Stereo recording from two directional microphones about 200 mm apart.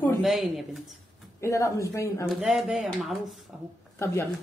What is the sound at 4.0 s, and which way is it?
Speech, 15° left (ahead or behind).